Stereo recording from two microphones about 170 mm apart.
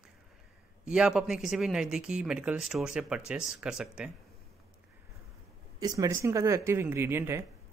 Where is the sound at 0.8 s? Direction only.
5° right (ahead or behind).